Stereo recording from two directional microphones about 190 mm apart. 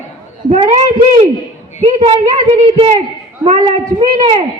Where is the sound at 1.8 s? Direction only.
35° right (ahead or behind).